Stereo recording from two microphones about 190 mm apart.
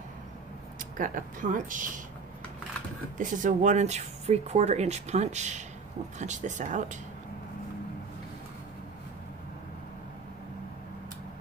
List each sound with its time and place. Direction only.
0.9 s speech: 45° right (ahead or behind)
3.2 s speech: 40° right (ahead or behind)